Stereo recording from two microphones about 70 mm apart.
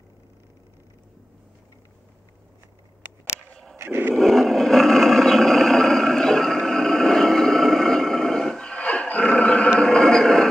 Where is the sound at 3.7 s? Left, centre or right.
Right.